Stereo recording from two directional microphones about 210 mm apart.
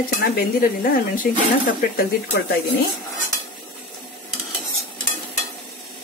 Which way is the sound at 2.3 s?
50° left (ahead or behind).